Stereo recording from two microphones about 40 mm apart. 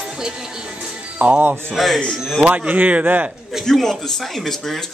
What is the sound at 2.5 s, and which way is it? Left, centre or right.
Speech, right.